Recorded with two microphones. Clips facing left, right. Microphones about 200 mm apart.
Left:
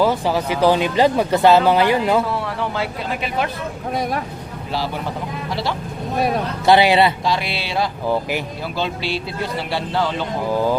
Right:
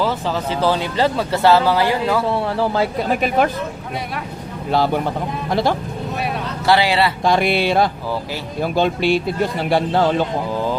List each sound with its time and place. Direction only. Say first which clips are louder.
0.0 s speech: left 3 dB; 15° left (ahead or behind)
2.2 s speech: right 4 dB; 30° right (ahead or behind); by 3.5 s 45° right (ahead or behind)
5.5 s a man's voice: right 7 dB; 50° right (ahead or behind)
6.1 s speech: left 6 dB; 40° left (ahead or behind)
6.7 s a man's voice: left 3 dB; 20° left (ahead or behind)
7.3 s a man's voice: right 6 dB; 55° right (ahead or behind)